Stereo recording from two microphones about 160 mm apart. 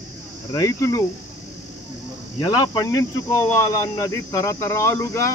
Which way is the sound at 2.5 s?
25° left (ahead or behind).